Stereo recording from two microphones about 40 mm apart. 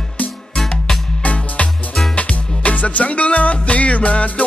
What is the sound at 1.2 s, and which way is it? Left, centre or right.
Music, left.